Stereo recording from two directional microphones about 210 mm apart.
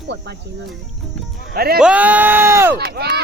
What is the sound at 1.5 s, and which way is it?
Speech, 45° right (ahead or behind).